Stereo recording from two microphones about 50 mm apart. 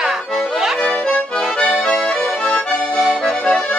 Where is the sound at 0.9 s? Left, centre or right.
Left.